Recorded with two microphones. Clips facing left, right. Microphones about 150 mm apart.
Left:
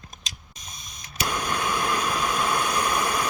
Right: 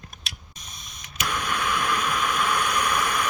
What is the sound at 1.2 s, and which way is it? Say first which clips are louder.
White noise: left 1 dB; 35° left (ahead or behind).